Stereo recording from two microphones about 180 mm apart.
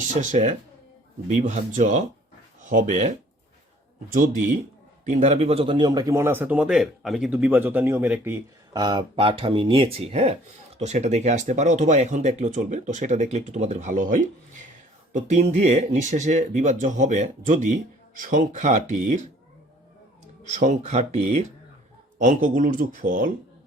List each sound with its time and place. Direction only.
0.1 s speech: 45° right (ahead or behind)
4.1 s speech: 45° right (ahead or behind); by 8.8 s 15° right (ahead or behind)
8.8 s speech: 25° right (ahead or behind); by 19.3 s 40° right (ahead or behind)
20.4 s speech: 45° right (ahead or behind)